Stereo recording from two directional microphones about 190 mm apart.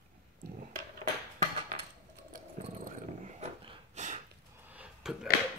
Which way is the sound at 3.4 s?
35° right (ahead or behind).